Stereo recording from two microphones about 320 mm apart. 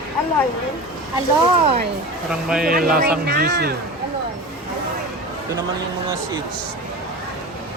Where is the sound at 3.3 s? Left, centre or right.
Right.